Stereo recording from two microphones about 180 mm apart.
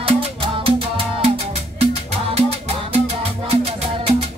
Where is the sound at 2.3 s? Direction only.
35° right (ahead or behind).